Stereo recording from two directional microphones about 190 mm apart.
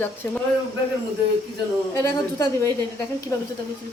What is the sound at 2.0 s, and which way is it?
A woman's voice, 20° left (ahead or behind).